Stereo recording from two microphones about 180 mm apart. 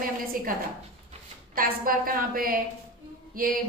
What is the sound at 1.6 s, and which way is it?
A woman's voice, 55° right (ahead or behind).